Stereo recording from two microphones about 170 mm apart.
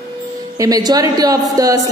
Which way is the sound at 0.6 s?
20° right (ahead or behind).